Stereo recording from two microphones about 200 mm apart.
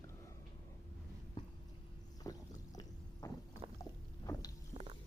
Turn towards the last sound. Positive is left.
turn(degrees=20)  # may be behind; listen again after turning